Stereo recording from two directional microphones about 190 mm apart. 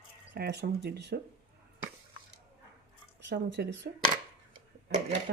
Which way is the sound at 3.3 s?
65° right (ahead or behind).